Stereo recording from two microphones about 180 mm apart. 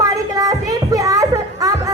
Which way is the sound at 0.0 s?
20° right (ahead or behind).